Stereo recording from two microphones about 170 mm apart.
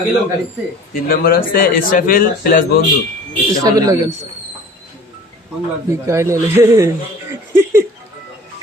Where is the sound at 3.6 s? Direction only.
20° right (ahead or behind).